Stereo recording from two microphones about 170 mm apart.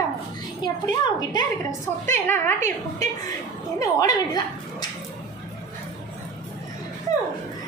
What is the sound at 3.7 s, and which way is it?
A woman's voice, 25° left (ahead or behind).